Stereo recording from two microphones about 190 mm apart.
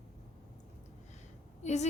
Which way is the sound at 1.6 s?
35° left (ahead or behind).